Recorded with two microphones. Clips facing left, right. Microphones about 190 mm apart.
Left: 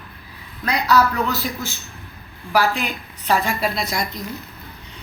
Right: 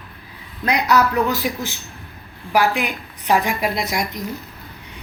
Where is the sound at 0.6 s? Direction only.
20° right (ahead or behind).